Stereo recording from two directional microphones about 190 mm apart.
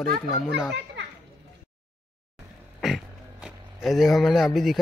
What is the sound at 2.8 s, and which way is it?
Speech, centre (ahead or behind).